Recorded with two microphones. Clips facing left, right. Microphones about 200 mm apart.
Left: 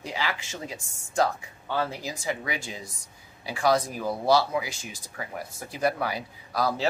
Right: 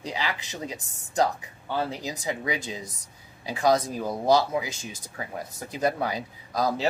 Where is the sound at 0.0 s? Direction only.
15° right (ahead or behind).